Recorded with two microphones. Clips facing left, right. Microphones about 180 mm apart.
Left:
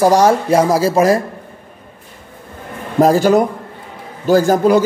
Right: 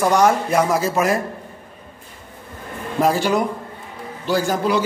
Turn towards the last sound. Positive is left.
turn(degrees=45)  # may be behind; listen again after turning